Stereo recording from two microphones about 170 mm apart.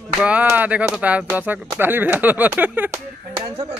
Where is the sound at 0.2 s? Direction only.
10° right (ahead or behind).